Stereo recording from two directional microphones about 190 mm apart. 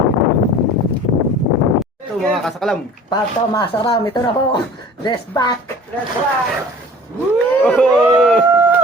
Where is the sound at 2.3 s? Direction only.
Centre (ahead or behind).